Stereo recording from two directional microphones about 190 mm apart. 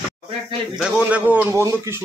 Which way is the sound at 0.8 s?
5° right (ahead or behind).